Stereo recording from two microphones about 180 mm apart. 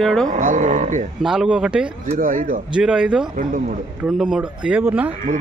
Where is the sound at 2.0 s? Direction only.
50° right (ahead or behind).